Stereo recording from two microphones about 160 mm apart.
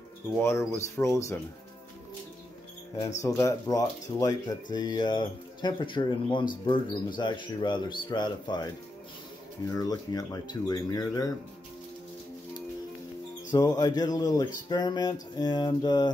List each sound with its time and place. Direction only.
0.4 s speech: 15° left (ahead or behind)
3.2 s speech: 20° left (ahead or behind)
9.8 s speech: 25° left (ahead or behind)
13.5 s speech: 25° left (ahead or behind)